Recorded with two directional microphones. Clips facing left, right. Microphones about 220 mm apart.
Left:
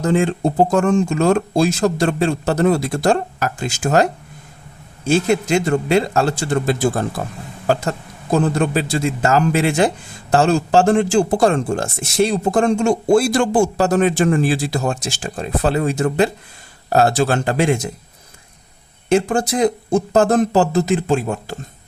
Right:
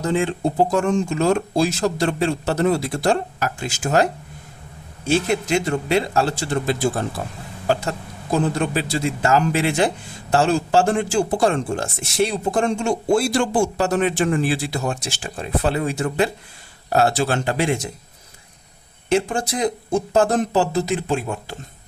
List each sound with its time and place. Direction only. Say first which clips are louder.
0.0 s speech: left 4 dB; 45° left (ahead or behind)
5.5 s speech: left 4 dB; 50° left (ahead or behind)
19.0 s speech: left 4 dB; 45° left (ahead or behind)